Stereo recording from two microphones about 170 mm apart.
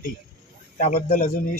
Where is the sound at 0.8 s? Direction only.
55° left (ahead or behind).